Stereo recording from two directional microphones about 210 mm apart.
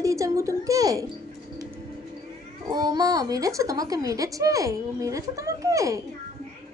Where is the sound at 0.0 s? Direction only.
15° right (ahead or behind).